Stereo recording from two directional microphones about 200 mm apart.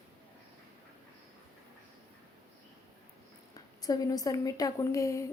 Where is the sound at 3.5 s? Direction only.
20° left (ahead or behind).